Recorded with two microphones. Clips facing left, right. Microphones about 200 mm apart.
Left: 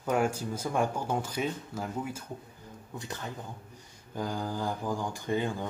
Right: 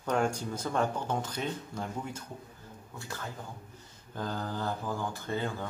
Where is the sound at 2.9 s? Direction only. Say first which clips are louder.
Left 2 dB; 20° left (ahead or behind).